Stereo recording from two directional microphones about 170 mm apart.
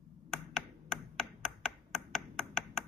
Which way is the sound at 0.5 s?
Centre (ahead or behind).